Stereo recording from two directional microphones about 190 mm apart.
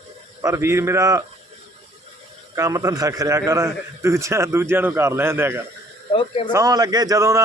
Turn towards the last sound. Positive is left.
turn(degrees=-15)  # may be behind; listen again after turning